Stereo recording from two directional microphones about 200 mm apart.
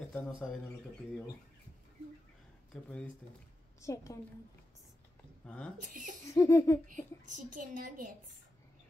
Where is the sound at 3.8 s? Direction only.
15° left (ahead or behind).